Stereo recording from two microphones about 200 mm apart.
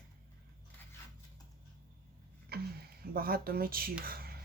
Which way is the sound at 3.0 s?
50° right (ahead or behind).